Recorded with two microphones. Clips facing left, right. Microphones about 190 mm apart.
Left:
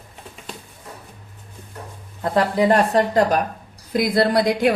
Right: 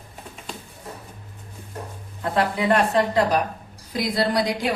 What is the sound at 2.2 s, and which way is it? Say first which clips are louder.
A woman's voice: left 4 dB; 40° left (ahead or behind).